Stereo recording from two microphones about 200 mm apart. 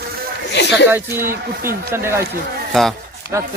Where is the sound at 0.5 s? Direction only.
60° left (ahead or behind).